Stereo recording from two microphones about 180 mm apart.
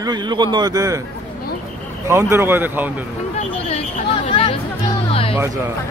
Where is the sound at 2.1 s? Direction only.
15° right (ahead or behind).